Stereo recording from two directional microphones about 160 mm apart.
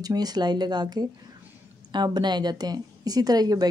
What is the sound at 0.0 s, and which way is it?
A woman's voice, 25° right (ahead or behind).